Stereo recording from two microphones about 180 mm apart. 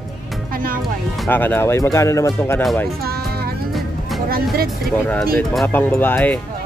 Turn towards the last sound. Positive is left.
turn(degrees=10)  # may be behind; listen again after turning